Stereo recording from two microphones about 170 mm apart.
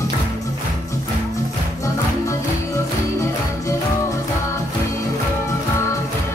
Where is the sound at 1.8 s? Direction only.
20° left (ahead or behind).